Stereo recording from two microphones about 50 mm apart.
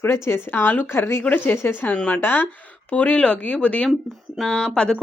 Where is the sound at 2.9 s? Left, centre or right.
Left.